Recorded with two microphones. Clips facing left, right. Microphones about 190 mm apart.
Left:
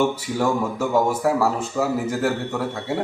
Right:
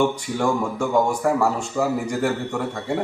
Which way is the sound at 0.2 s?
5° left (ahead or behind).